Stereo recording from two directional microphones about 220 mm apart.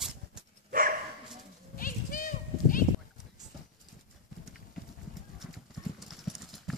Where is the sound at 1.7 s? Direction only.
40° left (ahead or behind).